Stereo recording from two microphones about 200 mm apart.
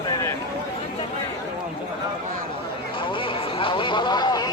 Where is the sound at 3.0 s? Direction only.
25° left (ahead or behind).